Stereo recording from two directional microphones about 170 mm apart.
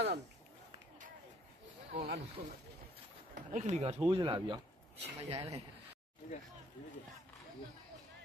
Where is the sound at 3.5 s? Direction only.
40° right (ahead or behind).